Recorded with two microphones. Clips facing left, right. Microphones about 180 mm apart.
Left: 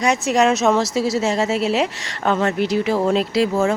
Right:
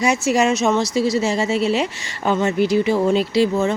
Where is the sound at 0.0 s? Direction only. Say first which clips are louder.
Even; centre (ahead or behind).